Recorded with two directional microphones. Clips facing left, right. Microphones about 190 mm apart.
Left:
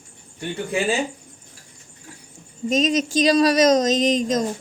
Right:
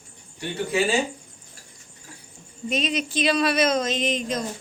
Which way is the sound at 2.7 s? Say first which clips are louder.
Left 6 dB; 45° left (ahead or behind).